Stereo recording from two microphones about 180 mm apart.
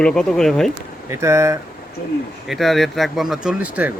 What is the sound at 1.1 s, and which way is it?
Speech, 15° right (ahead or behind).